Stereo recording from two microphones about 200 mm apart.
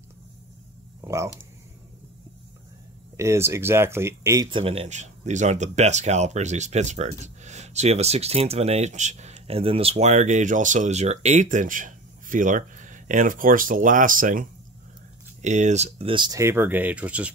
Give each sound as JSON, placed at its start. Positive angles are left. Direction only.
{"t": 1.0, "sound": "speech", "side_deg": -15}
{"t": 3.2, "sound": "speech", "side_deg": -15}
{"t": 15.4, "sound": "speech", "side_deg": -35}